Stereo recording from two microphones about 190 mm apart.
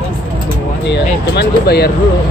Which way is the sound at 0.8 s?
60° left (ahead or behind).